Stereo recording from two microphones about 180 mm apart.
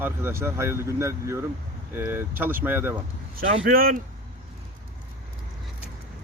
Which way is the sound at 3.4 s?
50° right (ahead or behind).